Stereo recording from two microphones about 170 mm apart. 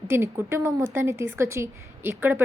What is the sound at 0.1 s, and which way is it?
A woman's voice, 15° right (ahead or behind).